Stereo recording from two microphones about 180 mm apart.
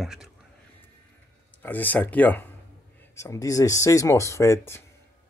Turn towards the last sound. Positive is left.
turn(degrees=15)  # may be behind; listen again after turning